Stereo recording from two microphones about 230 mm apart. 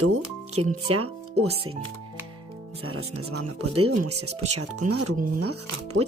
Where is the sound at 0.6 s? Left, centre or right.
Right.